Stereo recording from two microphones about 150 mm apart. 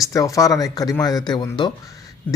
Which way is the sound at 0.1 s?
20° left (ahead or behind).